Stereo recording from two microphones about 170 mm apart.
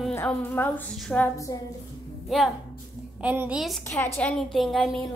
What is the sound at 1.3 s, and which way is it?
Speech, 20° left (ahead or behind).